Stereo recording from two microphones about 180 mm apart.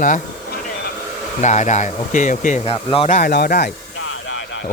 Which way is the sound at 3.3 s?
60° left (ahead or behind).